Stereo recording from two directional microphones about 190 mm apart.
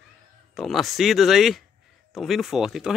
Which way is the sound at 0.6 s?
Centre (ahead or behind).